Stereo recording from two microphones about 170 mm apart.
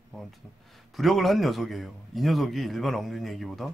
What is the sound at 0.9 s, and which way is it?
A man's voice, centre (ahead or behind).